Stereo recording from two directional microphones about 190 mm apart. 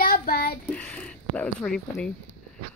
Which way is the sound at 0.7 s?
5° left (ahead or behind).